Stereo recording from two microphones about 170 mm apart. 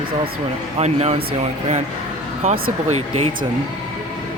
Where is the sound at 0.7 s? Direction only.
40° right (ahead or behind).